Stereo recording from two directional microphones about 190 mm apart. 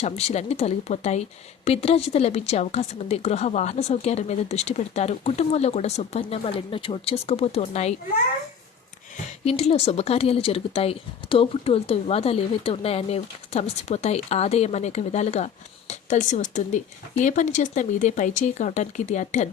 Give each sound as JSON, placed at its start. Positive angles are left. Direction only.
{"t": 0.0, "sound": "speech", "side_deg": 35}
{"t": 9.4, "sound": "speech", "side_deg": 35}